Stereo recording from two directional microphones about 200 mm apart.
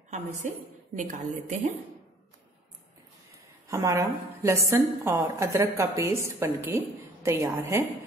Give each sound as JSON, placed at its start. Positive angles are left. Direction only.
{"t": 0.4, "sound": "a woman's voice", "side_deg": -40}
{"t": 3.6, "sound": "a woman's voice", "side_deg": -15}